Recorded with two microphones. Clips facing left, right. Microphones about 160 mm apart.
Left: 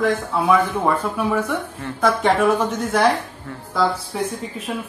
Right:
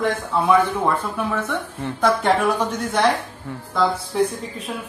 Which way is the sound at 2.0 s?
Centre (ahead or behind).